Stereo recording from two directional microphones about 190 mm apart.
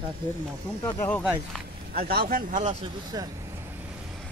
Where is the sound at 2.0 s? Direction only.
55° right (ahead or behind).